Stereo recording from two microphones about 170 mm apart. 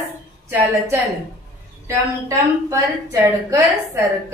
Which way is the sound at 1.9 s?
20° right (ahead or behind).